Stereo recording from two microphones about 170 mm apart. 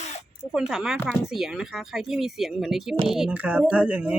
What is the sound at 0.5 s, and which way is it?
Speech, 5° right (ahead or behind).